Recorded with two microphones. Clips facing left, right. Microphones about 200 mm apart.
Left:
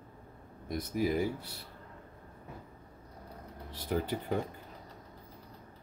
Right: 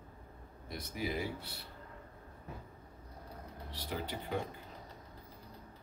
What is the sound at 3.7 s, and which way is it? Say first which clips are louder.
Speech: left 8 dB; 50° left (ahead or behind).